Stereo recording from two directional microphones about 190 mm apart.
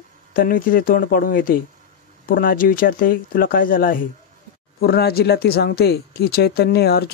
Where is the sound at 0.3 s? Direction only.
45° left (ahead or behind).